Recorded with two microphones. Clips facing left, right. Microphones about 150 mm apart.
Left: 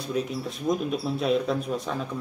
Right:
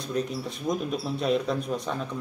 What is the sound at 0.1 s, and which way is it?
Speech, centre (ahead or behind).